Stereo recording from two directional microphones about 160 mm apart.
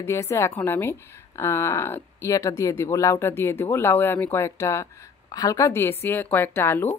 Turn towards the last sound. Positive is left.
turn(degrees=15)  # may be behind; listen again after turning